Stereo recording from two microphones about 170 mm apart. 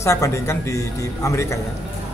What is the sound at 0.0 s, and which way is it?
Speech, 15° left (ahead or behind).